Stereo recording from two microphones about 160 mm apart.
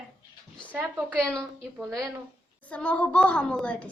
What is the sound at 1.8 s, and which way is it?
Speech, 20° right (ahead or behind).